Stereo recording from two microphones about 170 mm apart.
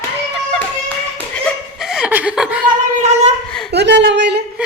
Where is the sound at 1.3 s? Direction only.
Centre (ahead or behind).